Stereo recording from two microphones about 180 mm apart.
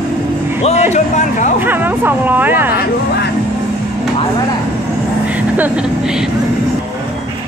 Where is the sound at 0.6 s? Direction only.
35° left (ahead or behind).